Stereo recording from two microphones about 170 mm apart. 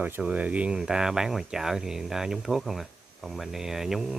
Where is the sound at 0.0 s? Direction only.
10° right (ahead or behind).